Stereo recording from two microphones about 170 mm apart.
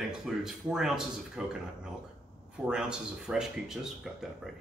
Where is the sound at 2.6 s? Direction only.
5° right (ahead or behind).